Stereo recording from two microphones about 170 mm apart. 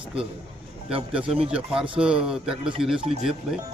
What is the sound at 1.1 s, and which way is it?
A man's voice, 5° right (ahead or behind).